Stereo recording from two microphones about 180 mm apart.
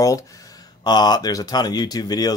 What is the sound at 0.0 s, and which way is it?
Speech, 20° left (ahead or behind).